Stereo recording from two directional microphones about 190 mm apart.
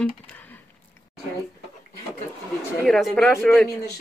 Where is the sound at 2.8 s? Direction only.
Centre (ahead or behind).